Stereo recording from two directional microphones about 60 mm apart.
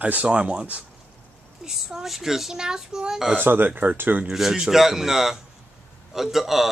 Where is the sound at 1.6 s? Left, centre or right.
Centre.